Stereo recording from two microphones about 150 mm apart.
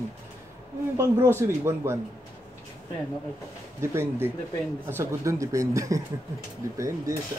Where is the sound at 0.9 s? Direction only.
20° right (ahead or behind).